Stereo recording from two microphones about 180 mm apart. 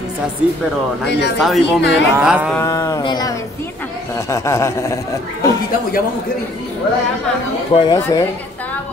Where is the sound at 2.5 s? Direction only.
15° left (ahead or behind).